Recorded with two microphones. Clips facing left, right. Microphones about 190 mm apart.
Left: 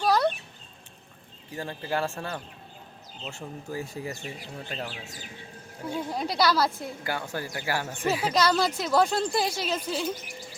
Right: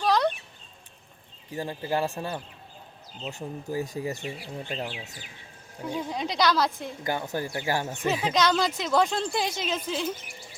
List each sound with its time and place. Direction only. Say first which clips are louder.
0.0 s a sound: even; 5° left (ahead or behind)
1.5 s speech: right 2 dB; 15° right (ahead or behind)
6.0 s speech: left 1 dB; 5° left (ahead or behind)
7.0 s speech: right 4 dB; 20° right (ahead or behind)
8.0 s speech: left 1 dB; 5° left (ahead or behind)